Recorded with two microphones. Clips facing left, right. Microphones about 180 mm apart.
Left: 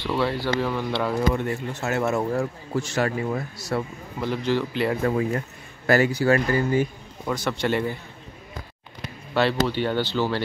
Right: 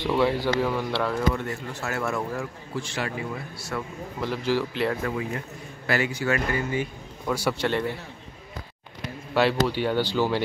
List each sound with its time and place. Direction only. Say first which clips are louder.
0.0 s speech: right 2 dB; 15° right (ahead or behind)
0.6 s a man's voice: even; 5° right (ahead or behind)
1.3 s speech: left 4 dB; 20° left (ahead or behind)
2.3 s speech: left 6 dB; 45° left (ahead or behind)
4.2 s a man's voice: left 2 dB; 5° right (ahead or behind)
5.0 s speech: left 6 dB; 40° left (ahead or behind)
7.3 s speech: right 3 dB; 10° right (ahead or behind)
7.6 s a man's voice: left 4 dB; centre (ahead or behind)
9.3 s speech: even; 10° right (ahead or behind)